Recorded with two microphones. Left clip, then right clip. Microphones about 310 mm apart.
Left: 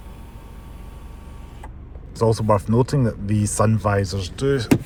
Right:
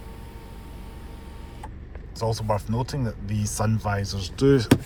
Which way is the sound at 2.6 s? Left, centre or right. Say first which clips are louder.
Left 9 dB; centre.